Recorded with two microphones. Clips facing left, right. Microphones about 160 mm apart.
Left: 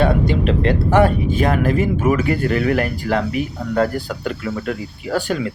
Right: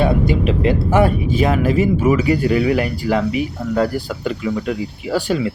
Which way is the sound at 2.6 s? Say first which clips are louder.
Right 1 dB; 10° right (ahead or behind).